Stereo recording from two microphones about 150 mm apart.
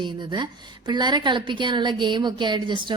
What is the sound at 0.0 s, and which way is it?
A woman's voice, 30° right (ahead or behind).